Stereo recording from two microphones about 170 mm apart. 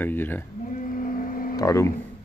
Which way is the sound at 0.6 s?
50° left (ahead or behind).